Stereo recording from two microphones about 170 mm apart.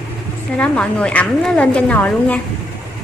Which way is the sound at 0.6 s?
5° left (ahead or behind).